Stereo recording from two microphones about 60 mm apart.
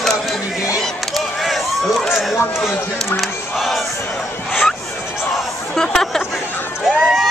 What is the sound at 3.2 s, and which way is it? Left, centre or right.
Battle cry, centre.